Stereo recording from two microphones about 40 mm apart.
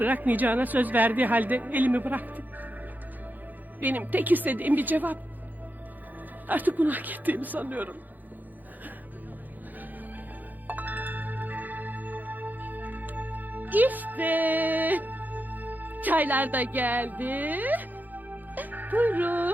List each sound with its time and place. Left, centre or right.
0.0 s a woman's voice: right
3.8 s a woman's voice: right
6.5 s a woman's voice: right
10.7 s music: right